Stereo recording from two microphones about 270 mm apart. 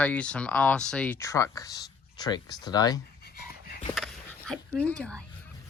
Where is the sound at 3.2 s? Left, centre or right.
Left.